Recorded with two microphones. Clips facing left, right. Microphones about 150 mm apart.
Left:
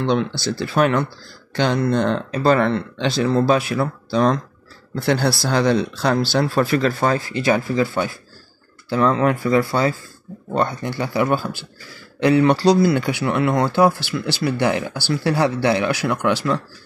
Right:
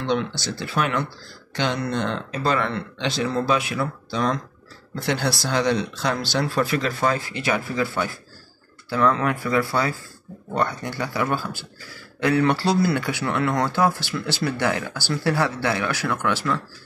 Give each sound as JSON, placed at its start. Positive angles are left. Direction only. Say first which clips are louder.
{"t": 0.6, "sound": "speech", "louder": "left 6 dB", "side_deg": 40}